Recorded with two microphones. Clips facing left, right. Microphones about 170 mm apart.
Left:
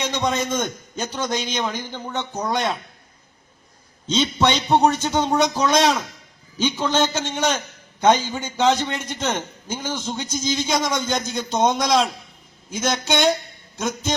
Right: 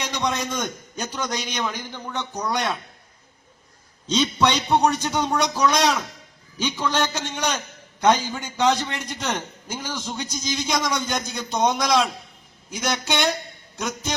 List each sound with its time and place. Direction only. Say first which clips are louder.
0.0 s a man's voice: left 3 dB; 30° left (ahead or behind)
4.0 s a man's voice: left 1 dB; 25° left (ahead or behind)